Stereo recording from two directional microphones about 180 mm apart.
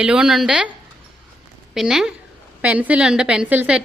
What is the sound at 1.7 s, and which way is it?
A woman's voice, 5° right (ahead or behind).